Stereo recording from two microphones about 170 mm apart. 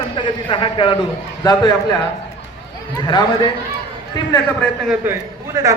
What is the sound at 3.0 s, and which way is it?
Speech, 25° left (ahead or behind).